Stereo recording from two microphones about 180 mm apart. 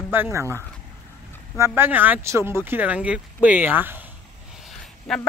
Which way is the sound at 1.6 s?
10° right (ahead or behind).